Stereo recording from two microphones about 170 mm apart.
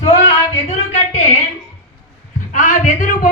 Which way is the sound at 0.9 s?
40° left (ahead or behind).